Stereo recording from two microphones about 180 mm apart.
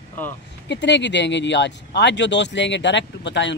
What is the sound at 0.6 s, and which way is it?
Speech, 75° left (ahead or behind).